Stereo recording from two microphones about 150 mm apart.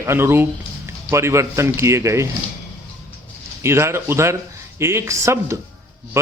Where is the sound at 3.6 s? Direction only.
20° right (ahead or behind).